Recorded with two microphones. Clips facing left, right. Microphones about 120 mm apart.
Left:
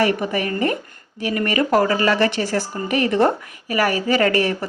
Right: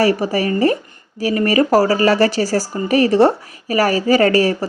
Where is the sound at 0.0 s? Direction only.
35° right (ahead or behind).